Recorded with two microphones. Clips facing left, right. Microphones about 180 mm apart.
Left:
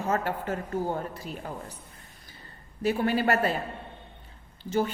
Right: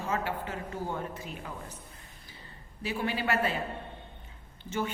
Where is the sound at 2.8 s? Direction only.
45° left (ahead or behind).